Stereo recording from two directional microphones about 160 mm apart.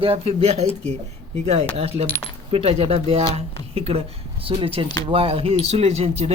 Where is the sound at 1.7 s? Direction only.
40° right (ahead or behind).